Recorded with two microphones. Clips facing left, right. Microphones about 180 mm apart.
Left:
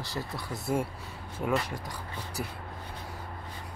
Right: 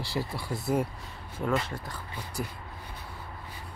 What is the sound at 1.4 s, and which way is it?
Speech, 10° left (ahead or behind).